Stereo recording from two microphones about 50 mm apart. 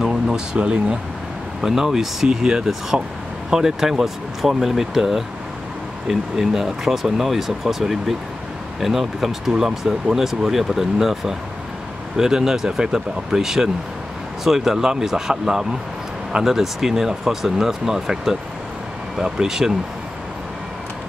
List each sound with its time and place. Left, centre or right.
0.0 s a sound: centre
0.6 s speech: right
1.6 s speech: centre